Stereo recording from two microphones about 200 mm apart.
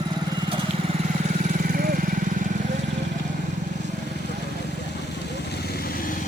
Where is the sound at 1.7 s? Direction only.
45° right (ahead or behind).